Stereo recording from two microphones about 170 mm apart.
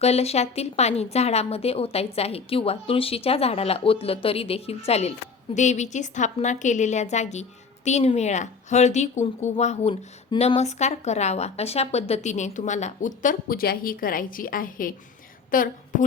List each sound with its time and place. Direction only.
0.0 s a woman's voice: 40° left (ahead or behind)